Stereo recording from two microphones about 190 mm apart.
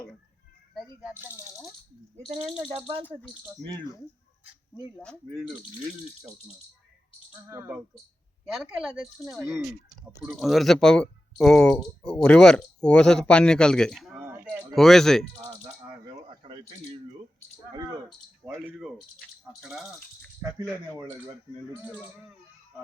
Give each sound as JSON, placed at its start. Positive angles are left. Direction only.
{"t": 0.7, "sound": "speech", "side_deg": 0}
{"t": 2.2, "sound": "speech", "side_deg": -30}
{"t": 3.0, "sound": "speech", "side_deg": 10}
{"t": 3.6, "sound": "speech", "side_deg": -65}
{"t": 7.4, "sound": "speech", "side_deg": -15}
{"t": 9.5, "sound": "speech", "side_deg": 0}
{"t": 14.2, "sound": "a sound", "side_deg": -10}
{"t": 14.8, "sound": "speech", "side_deg": 0}
{"t": 16.1, "sound": "a sound", "side_deg": -25}
{"t": 18.4, "sound": "speech", "side_deg": -15}
{"t": 19.6, "sound": "speech", "side_deg": 0}